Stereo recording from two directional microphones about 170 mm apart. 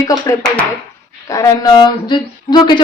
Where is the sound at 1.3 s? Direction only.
20° left (ahead or behind).